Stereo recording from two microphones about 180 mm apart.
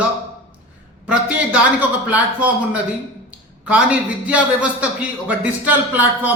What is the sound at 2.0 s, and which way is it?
Speech, 10° right (ahead or behind).